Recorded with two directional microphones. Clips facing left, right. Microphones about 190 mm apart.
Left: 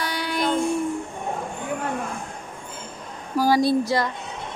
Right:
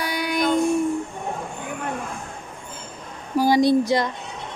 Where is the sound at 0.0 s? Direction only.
10° right (ahead or behind).